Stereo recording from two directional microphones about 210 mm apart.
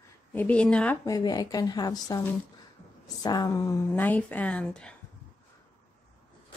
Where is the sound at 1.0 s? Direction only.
20° left (ahead or behind).